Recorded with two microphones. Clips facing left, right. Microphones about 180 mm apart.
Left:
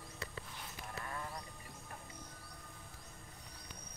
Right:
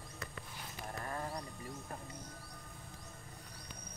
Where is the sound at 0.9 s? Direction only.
40° right (ahead or behind).